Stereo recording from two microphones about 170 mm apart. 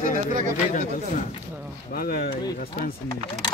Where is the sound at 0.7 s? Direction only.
50° left (ahead or behind).